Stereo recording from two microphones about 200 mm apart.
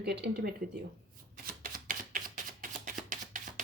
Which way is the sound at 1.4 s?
45° right (ahead or behind).